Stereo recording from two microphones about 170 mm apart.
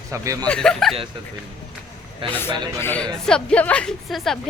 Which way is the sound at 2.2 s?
30° right (ahead or behind).